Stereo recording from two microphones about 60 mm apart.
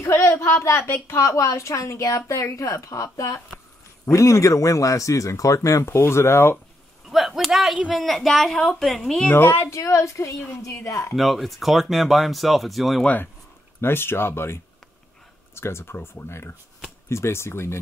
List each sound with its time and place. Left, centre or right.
0.0 s a sound: left
1.1 s a woman's voice: left
5.9 s speech: left
7.1 s a sound: centre
7.9 s speech: centre
9.3 s speech: left
9.8 s a woman's voice: left
11.1 s speech: centre
13.7 s speech: left